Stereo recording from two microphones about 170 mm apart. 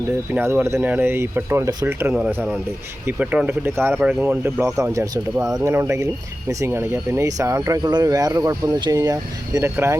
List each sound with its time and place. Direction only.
0.3 s speech: 15° right (ahead or behind)